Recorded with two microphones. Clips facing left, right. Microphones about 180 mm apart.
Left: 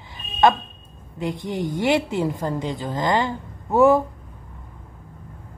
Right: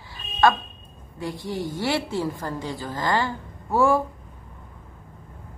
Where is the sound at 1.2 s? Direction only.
20° left (ahead or behind).